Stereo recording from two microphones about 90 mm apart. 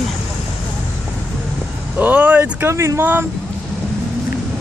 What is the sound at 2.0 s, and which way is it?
Speech, 20° right (ahead or behind).